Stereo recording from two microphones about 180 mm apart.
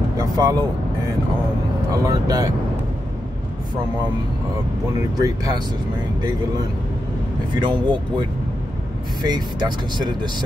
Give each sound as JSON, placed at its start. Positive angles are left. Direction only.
{"t": 0.2, "sound": "speech", "side_deg": -20}
{"t": 2.0, "sound": "speech", "side_deg": -20}
{"t": 5.1, "sound": "speech", "side_deg": -20}
{"t": 7.5, "sound": "speech", "side_deg": -25}
{"t": 9.2, "sound": "speech", "side_deg": -25}